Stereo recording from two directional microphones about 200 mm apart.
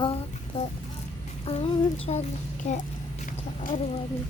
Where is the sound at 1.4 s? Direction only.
30° left (ahead or behind).